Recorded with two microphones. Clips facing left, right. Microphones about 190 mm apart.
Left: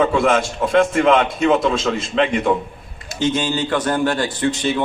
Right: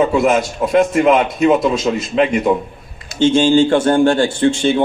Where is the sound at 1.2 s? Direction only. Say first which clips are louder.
Right 3 dB; 15° right (ahead or behind).